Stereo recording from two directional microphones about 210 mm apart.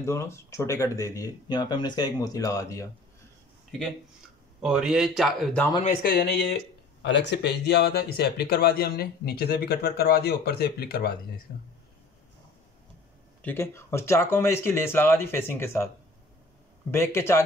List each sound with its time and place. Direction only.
0.0 s speech: 15° left (ahead or behind)
4.6 s speech: 5° right (ahead or behind)
5.8 s speech: 40° left (ahead or behind)
13.4 s speech: 10° left (ahead or behind)
16.9 s speech: 10° left (ahead or behind)